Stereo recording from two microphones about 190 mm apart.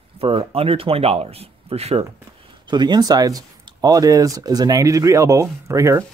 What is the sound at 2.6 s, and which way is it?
Speech, 25° right (ahead or behind).